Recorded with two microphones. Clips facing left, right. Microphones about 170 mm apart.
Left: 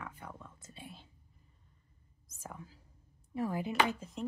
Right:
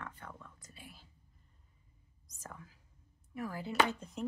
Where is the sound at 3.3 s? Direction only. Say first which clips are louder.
Left 5 dB; 25° left (ahead or behind); by 4.2 s 5° left (ahead or behind).